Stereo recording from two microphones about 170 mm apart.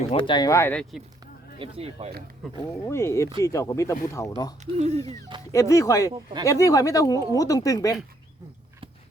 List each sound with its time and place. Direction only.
0.1 s speech: 30° left (ahead or behind); by 1.0 s 5° left (ahead or behind)
1.5 s speech: 30° right (ahead or behind)
2.9 s speech: 15° left (ahead or behind)
4.6 s speech: 40° right (ahead or behind)
5.5 s speech: 20° left (ahead or behind)